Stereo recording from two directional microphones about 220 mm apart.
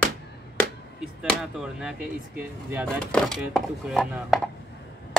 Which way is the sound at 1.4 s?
5° right (ahead or behind).